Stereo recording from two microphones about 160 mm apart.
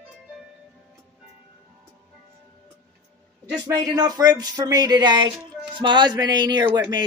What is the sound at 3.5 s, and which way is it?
Speech, 25° right (ahead or behind).